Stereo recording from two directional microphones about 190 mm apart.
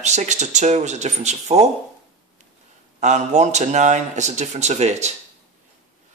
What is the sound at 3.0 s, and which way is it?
Speech, 40° right (ahead or behind).